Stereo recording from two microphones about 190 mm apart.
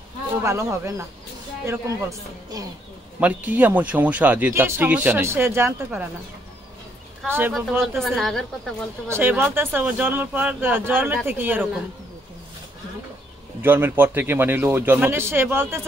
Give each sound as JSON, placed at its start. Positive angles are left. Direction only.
{"t": 0.4, "sound": "speech", "side_deg": -15}
{"t": 3.2, "sound": "speech", "side_deg": -10}
{"t": 7.2, "sound": "speech", "side_deg": -10}
{"t": 7.8, "sound": "a woman's voice", "side_deg": 0}
{"t": 9.1, "sound": "speech", "side_deg": -10}
{"t": 13.6, "sound": "speech", "side_deg": -10}